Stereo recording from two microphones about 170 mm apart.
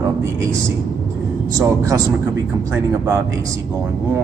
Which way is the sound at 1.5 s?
15° right (ahead or behind).